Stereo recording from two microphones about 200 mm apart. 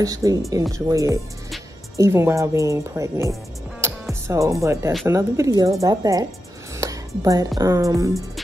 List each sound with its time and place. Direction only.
0.0 s speech: 15° right (ahead or behind)